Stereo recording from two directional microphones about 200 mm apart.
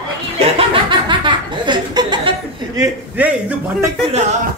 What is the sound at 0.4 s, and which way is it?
Chuckle, 25° right (ahead or behind).